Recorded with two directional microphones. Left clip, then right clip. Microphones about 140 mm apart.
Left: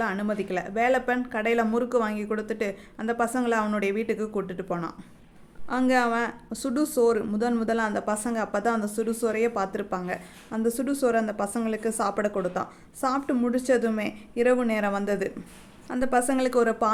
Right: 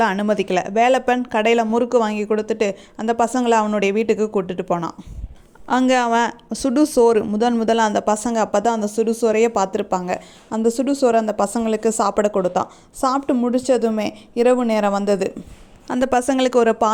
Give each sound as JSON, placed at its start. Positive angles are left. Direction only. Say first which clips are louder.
{"t": 0.0, "sound": "speech", "louder": "right 10 dB", "side_deg": -55}
{"t": 15.9, "sound": "speech", "louder": "right 6 dB", "side_deg": -55}